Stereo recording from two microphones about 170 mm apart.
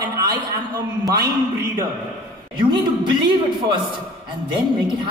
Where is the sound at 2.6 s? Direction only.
25° right (ahead or behind).